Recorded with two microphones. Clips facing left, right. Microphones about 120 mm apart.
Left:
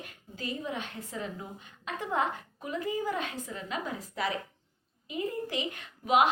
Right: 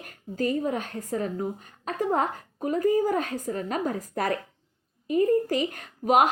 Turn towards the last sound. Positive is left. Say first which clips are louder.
# right 4 dB
turn(degrees=-45)  # may be behind; listen again after turning